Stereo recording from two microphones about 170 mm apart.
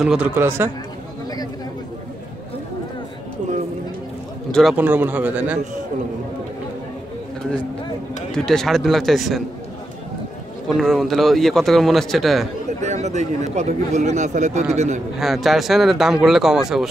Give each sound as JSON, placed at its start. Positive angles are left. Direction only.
{"t": 0.0, "sound": "speech", "side_deg": -5}
{"t": 4.5, "sound": "speech", "side_deg": 5}
{"t": 4.7, "sound": "speech", "side_deg": -10}
{"t": 8.4, "sound": "speech", "side_deg": 5}
{"t": 10.8, "sound": "speech", "side_deg": 0}
{"t": 12.8, "sound": "speech", "side_deg": -45}
{"t": 15.1, "sound": "speech", "side_deg": 0}